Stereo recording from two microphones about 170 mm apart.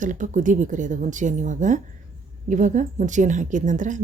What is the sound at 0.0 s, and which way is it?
Speech, 50° right (ahead or behind).